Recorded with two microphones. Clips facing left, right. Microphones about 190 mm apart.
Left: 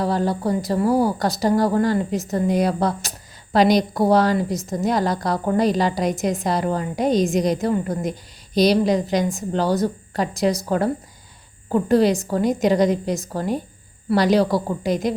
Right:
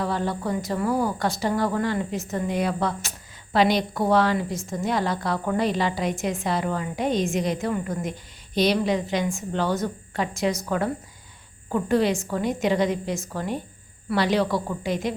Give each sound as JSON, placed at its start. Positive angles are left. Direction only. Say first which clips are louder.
{"t": 0.0, "sound": "a woman's voice", "louder": "left 5 dB", "side_deg": 35}